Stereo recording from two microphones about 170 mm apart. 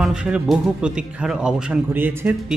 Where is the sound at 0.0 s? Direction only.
5° right (ahead or behind).